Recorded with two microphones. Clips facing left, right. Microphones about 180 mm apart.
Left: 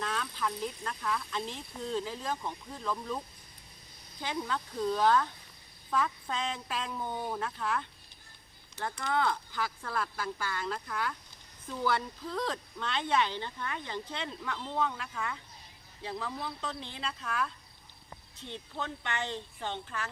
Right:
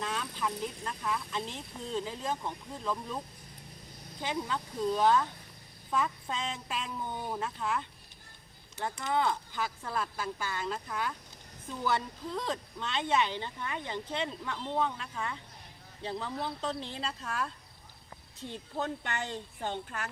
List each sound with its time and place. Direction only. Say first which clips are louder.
0.0 s speech: even; 15° right (ahead or behind)
4.2 s speech: right 1 dB; 20° right (ahead or behind)
18.4 s speech: right 4 dB; 40° right (ahead or behind)